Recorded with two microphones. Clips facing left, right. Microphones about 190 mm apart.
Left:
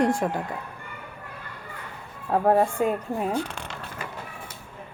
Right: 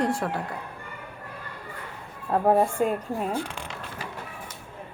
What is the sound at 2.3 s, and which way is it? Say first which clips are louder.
Speech: left 1 dB; centre (ahead or behind).